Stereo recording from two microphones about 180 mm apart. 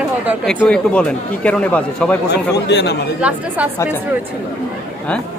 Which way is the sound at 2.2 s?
70° left (ahead or behind).